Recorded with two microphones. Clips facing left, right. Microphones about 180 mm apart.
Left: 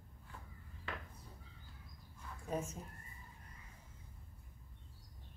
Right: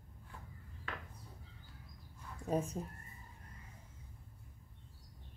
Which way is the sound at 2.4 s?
35° right (ahead or behind).